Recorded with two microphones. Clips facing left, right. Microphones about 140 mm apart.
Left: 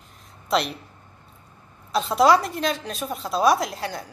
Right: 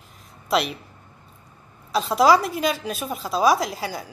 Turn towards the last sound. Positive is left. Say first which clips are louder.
# right 1 dB
turn(degrees=-5)  # may be behind; listen again after turning